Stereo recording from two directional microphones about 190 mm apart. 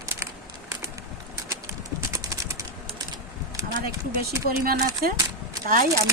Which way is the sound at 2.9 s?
20° right (ahead or behind).